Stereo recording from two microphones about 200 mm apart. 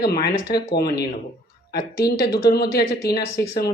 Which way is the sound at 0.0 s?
50° left (ahead or behind).